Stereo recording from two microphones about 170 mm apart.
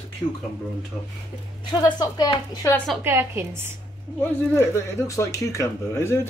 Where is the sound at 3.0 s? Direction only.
15° right (ahead or behind).